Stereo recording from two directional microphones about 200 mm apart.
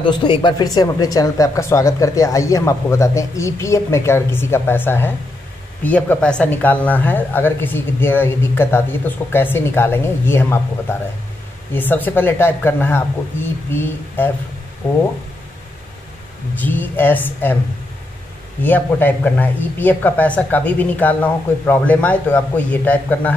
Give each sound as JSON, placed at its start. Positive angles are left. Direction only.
{"t": 0.0, "sound": "speech", "side_deg": 25}
{"t": 16.5, "sound": "speech", "side_deg": 10}
{"t": 18.6, "sound": "speech", "side_deg": 10}